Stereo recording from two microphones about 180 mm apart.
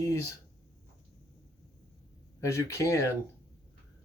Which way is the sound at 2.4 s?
15° left (ahead or behind).